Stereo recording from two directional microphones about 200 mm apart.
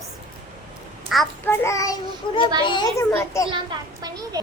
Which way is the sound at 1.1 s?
Centre (ahead or behind).